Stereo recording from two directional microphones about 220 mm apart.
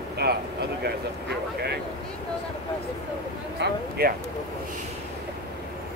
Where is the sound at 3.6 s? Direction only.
50° right (ahead or behind).